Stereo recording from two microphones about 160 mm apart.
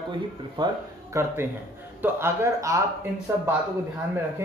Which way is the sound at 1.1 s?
15° right (ahead or behind).